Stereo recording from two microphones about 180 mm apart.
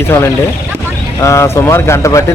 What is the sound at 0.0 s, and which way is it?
Speech, 10° left (ahead or behind).